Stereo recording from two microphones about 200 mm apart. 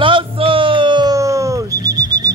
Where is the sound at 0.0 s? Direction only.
25° right (ahead or behind).